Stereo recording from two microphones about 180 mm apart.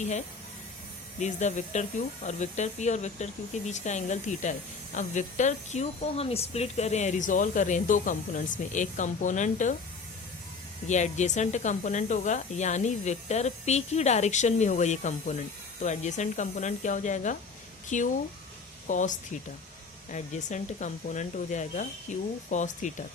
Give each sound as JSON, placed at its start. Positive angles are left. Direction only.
{"t": 1.2, "sound": "speech", "side_deg": 40}
{"t": 10.8, "sound": "speech", "side_deg": 40}